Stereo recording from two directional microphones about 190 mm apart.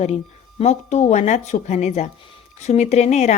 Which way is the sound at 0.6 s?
35° left (ahead or behind).